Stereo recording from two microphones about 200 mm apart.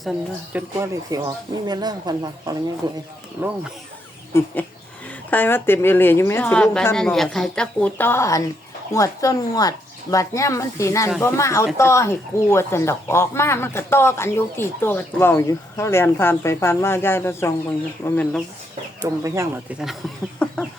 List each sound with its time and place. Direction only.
0.0 s speech: centre (ahead or behind)
0.8 s speech: 15° right (ahead or behind)
3.4 s speech: 10° right (ahead or behind)
4.3 s speech: 15° left (ahead or behind)
19.0 s speech: 15° right (ahead or behind)
20.4 s speech: 5° left (ahead or behind)